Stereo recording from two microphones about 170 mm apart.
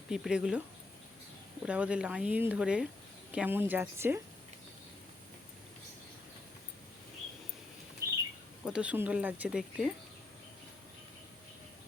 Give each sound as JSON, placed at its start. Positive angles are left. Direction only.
{"t": 0.1, "sound": "speech", "side_deg": -5}
{"t": 1.6, "sound": "speech", "side_deg": -5}
{"t": 8.0, "sound": "bird", "side_deg": -20}
{"t": 8.6, "sound": "speech", "side_deg": -5}